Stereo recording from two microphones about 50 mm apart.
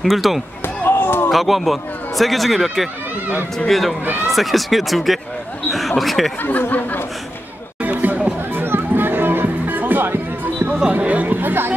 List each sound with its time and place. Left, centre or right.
0.0 s speech: centre
0.8 s basketball bounce: left
1.3 s speech: centre
7.8 s a sound: right
8.5 s music: right
10.9 s speech: right